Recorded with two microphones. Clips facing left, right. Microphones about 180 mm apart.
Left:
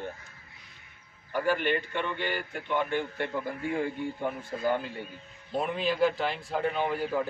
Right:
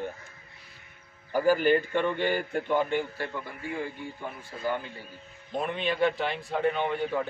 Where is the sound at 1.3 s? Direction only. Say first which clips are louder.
Right 5 dB; 40° right (ahead or behind).